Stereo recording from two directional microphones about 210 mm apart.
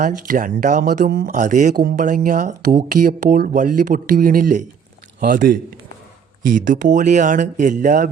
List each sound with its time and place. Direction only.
0.0 s speech: 40° right (ahead or behind)